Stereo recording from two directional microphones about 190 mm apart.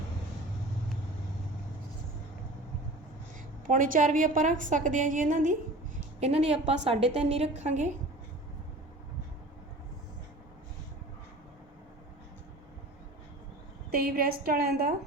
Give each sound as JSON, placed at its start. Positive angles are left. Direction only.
{"t": 3.7, "sound": "a woman's voice", "side_deg": -45}
{"t": 6.1, "sound": "a woman's voice", "side_deg": -35}
{"t": 13.9, "sound": "a woman's voice", "side_deg": -50}